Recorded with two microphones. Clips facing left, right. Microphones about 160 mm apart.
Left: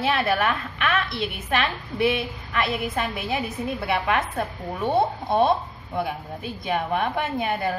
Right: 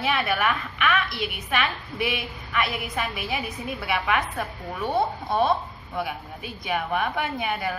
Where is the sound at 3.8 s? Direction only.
30° left (ahead or behind).